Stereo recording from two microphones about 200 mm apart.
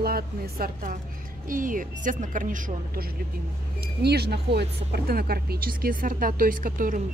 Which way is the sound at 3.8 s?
55° right (ahead or behind).